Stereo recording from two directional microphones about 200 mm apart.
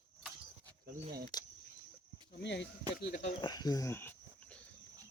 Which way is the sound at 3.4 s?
20° left (ahead or behind).